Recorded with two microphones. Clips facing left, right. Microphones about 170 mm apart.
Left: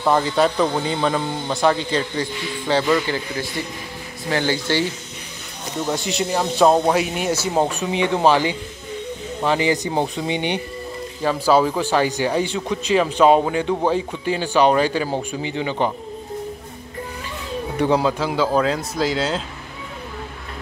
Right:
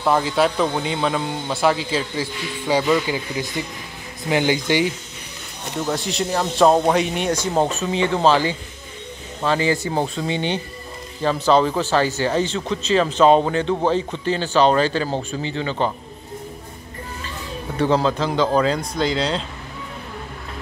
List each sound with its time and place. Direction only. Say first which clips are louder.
0.0 s a man's voice: left 1 dB; centre (ahead or behind)
5.9 s a man's voice: left 1 dB; centre (ahead or behind)
17.7 s speech: even; 10° left (ahead or behind)